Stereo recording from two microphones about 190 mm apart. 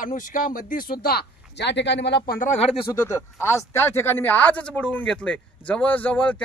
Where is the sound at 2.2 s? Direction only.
45° left (ahead or behind).